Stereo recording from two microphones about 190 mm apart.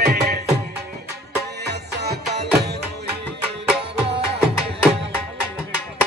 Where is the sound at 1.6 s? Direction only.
60° right (ahead or behind).